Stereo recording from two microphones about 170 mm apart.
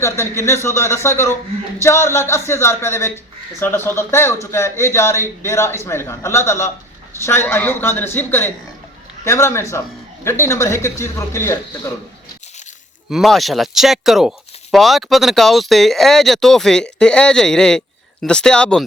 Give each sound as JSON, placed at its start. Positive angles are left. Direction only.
{"t": 0.0, "sound": "a man's voice", "side_deg": 15}
{"t": 13.1, "sound": "speech", "side_deg": 0}